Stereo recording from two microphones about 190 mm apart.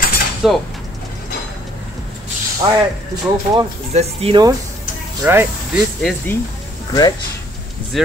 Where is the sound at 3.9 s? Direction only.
30° right (ahead or behind).